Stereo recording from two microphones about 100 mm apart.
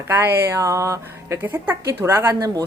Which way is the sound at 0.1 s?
25° right (ahead or behind).